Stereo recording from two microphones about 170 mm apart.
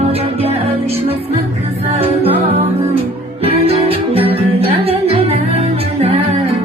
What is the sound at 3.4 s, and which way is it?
Music, 35° right (ahead or behind).